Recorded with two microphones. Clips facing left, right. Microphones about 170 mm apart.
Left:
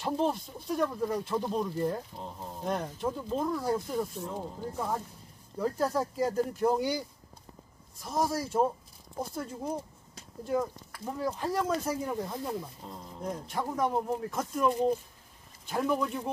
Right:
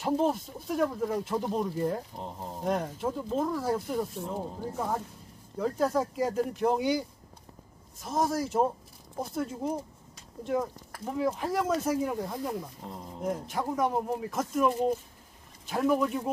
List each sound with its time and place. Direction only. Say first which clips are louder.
0.0 s speech: right 2 dB; 5° right (ahead or behind)
2.1 s speech: right 2 dB; 20° right (ahead or behind)
2.6 s speech: right 2 dB; 5° right (ahead or behind)
4.2 s speech: right 2 dB; 15° right (ahead or behind)
5.6 s speech: right 2 dB; centre (ahead or behind)
8.0 s speech: right 2 dB; centre (ahead or behind)
12.8 s speech: right 4 dB; 20° right (ahead or behind)
13.7 s speech: even; 5° right (ahead or behind)